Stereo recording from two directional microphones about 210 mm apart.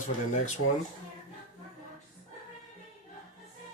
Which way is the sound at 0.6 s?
90° left.